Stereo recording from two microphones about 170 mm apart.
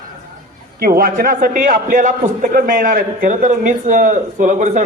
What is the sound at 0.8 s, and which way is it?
A man's voice, 60° right (ahead or behind).